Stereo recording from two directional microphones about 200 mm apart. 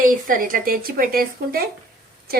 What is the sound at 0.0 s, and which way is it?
A woman's voice, 45° right (ahead or behind).